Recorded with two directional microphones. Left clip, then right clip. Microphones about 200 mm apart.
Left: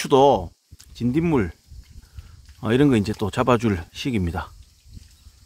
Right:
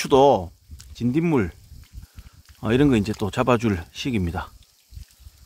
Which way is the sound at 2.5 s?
5° right (ahead or behind).